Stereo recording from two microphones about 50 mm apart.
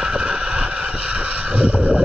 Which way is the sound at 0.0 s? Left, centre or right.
Centre.